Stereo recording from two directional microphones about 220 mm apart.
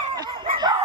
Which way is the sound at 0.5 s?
20° right (ahead or behind).